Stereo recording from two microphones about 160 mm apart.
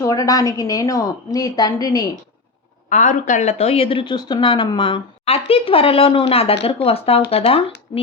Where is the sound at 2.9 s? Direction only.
50° left (ahead or behind).